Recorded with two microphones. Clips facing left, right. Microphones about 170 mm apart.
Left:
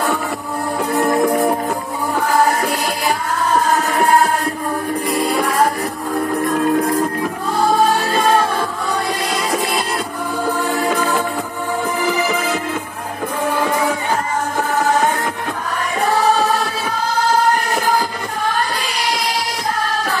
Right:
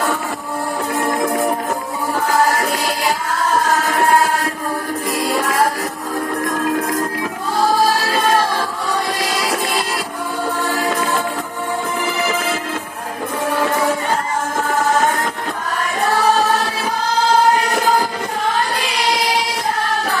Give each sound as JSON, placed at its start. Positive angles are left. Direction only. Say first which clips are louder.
{"t": 6.4, "sound": "music", "louder": "left 4 dB", "side_deg": -90}